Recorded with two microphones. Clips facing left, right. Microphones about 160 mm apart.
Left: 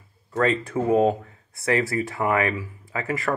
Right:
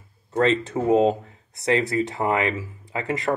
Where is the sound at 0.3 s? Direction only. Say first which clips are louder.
Right 2 dB; 25° right (ahead or behind).